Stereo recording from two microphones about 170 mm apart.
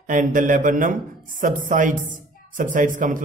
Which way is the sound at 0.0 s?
50° right (ahead or behind).